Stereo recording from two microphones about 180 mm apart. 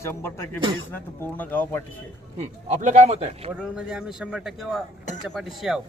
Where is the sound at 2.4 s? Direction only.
40° right (ahead or behind).